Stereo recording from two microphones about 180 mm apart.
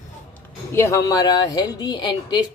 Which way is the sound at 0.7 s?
15° left (ahead or behind).